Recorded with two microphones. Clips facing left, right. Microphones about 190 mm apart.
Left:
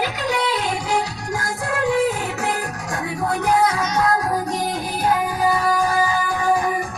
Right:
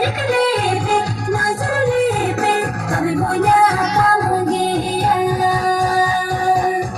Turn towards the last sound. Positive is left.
turn(degrees=-40)  # may be behind; listen again after turning